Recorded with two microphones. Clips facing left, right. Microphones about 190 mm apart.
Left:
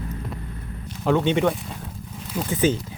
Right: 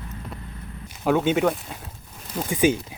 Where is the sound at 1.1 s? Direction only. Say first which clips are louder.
Even; 5° right (ahead or behind).